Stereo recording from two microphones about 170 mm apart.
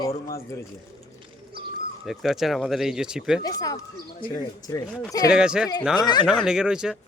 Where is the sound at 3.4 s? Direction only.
20° left (ahead or behind).